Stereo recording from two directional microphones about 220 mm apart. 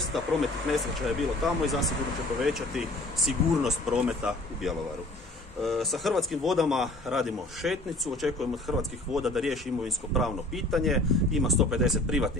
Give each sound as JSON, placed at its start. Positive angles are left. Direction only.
{"t": 0.1, "sound": "speech", "side_deg": 0}